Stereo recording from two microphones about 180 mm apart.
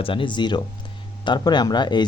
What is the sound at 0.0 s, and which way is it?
Speech, 30° left (ahead or behind).